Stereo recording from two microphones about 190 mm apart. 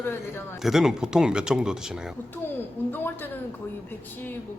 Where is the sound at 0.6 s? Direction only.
Centre (ahead or behind).